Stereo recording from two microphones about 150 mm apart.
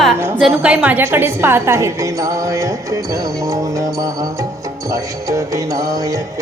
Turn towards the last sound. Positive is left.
turn(degrees=-20)  # may be behind; listen again after turning